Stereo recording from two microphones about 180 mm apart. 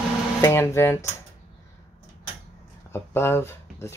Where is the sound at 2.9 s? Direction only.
15° left (ahead or behind).